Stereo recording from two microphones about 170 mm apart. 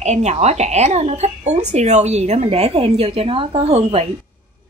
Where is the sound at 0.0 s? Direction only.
40° right (ahead or behind).